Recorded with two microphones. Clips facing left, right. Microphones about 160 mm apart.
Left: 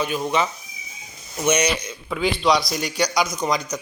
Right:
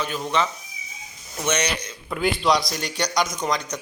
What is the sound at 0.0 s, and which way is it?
Speech, 15° left (ahead or behind).